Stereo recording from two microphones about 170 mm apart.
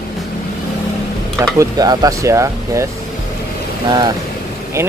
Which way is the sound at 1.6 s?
20° right (ahead or behind).